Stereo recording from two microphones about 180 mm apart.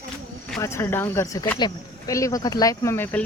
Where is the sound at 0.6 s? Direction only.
15° left (ahead or behind).